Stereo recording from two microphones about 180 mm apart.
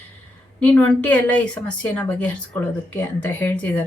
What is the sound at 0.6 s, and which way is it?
A woman's voice, 10° left (ahead or behind).